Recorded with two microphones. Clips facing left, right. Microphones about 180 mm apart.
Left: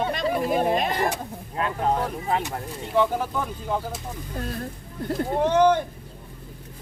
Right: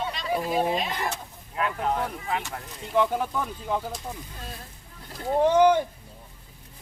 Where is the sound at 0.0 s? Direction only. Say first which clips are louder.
Left 4 dB; 55° left (ahead or behind).